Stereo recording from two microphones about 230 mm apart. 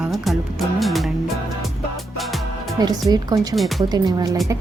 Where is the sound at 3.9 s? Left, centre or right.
Centre.